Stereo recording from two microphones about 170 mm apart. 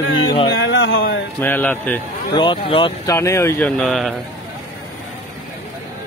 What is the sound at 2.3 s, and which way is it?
Speech, 25° left (ahead or behind).